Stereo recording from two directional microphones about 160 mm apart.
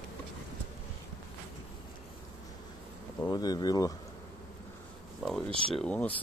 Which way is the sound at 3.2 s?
25° left (ahead or behind).